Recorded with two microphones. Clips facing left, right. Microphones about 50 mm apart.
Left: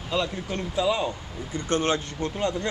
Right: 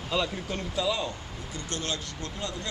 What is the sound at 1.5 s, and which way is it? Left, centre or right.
Speech, left.